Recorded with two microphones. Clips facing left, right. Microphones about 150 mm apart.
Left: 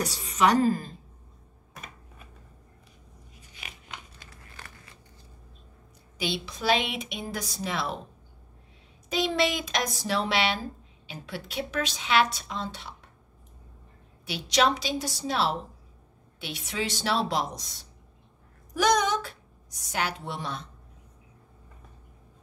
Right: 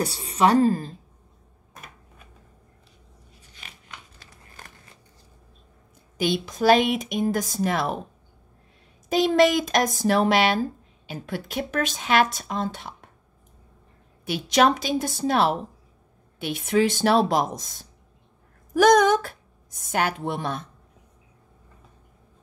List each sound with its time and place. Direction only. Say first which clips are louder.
0.0 s a woman's voice: right 3 dB; 35° right (ahead or behind)
3.3 s a sound: left 2 dB; 10° left (ahead or behind)
6.1 s a woman's voice: right 7 dB; 45° right (ahead or behind)
9.1 s a woman's voice: right 8 dB; 45° right (ahead or behind)
14.2 s a woman's voice: right 5 dB; 50° right (ahead or behind)